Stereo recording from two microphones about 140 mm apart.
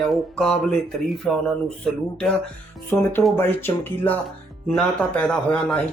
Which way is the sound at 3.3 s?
15° left (ahead or behind).